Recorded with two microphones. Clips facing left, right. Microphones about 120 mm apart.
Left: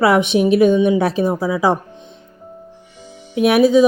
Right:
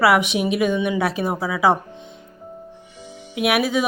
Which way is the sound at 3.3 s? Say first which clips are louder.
Left 6 dB; 30° left (ahead or behind).